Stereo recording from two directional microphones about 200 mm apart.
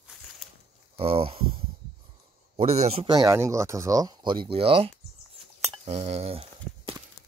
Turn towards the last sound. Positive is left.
turn(degrees=-30)  # may be behind; listen again after turning